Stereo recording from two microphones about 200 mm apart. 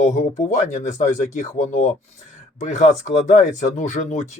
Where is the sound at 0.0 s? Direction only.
35° left (ahead or behind).